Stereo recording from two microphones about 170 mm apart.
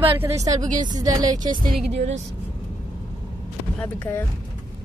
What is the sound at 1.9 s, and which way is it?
Speech, 40° right (ahead or behind).